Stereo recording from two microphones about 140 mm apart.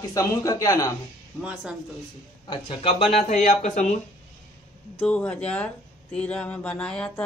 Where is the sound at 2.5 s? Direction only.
40° left (ahead or behind); by 4.0 s 55° left (ahead or behind).